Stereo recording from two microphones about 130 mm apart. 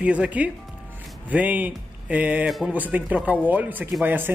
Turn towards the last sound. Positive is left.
turn(degrees=-15)  # may be behind; listen again after turning